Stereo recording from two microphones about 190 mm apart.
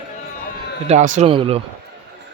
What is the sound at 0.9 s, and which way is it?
Speech, 40° right (ahead or behind).